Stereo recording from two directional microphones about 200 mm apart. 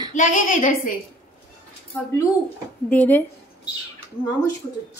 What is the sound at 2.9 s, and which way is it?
Speech, 10° left (ahead or behind).